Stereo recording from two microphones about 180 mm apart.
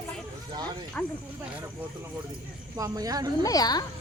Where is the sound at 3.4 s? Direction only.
20° left (ahead or behind).